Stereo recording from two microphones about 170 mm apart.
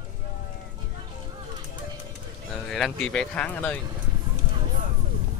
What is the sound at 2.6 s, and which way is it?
Speech, 5° left (ahead or behind).